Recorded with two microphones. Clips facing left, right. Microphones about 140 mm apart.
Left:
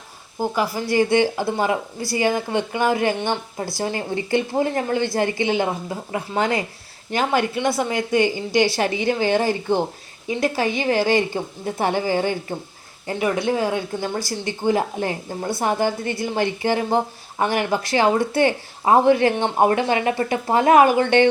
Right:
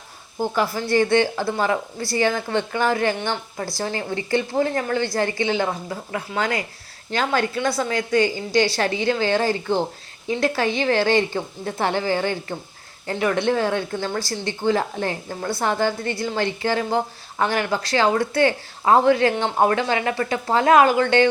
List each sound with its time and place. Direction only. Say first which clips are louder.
0.3 s a woman's voice: even; 10° left (ahead or behind)